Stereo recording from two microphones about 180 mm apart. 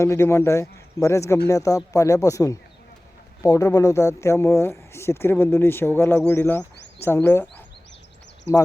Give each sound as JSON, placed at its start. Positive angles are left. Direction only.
{"t": 0.0, "sound": "speech", "side_deg": 15}